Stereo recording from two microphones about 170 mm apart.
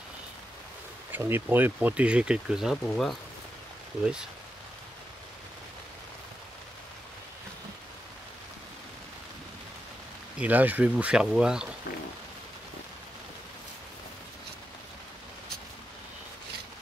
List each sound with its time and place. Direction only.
1.1 s speech: 10° right (ahead or behind)
10.4 s speech: 10° right (ahead or behind)